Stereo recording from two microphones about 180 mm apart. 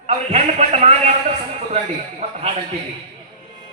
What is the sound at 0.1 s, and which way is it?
Music, 40° right (ahead or behind).